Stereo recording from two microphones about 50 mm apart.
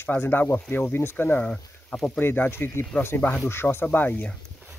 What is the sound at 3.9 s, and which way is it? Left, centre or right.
Speech, left.